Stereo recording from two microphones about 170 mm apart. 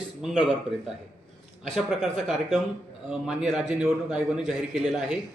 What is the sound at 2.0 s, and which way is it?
Speech, centre (ahead or behind).